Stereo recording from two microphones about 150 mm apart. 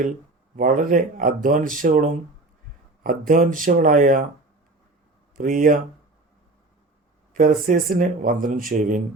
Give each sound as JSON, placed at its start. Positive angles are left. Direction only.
{"t": 0.5, "sound": "speech", "side_deg": -65}
{"t": 5.4, "sound": "speech", "side_deg": -65}
{"t": 7.3, "sound": "speech", "side_deg": -65}